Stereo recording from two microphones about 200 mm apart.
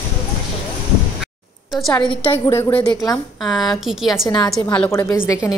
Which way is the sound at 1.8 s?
10° left (ahead or behind).